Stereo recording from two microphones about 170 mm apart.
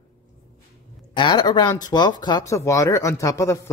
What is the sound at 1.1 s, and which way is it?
Speech, 25° left (ahead or behind).